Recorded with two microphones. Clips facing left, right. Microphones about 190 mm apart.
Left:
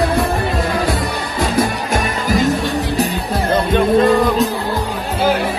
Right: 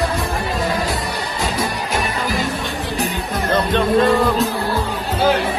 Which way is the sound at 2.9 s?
35° left (ahead or behind).